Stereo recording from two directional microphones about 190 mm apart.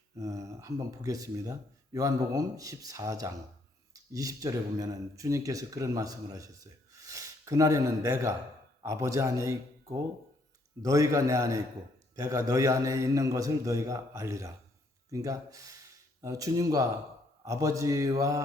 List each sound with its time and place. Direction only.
0.2 s speech: 15° right (ahead or behind)